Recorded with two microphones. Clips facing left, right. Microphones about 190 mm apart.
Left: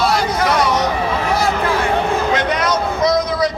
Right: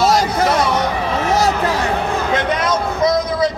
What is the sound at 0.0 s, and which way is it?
Music, 40° right (ahead or behind).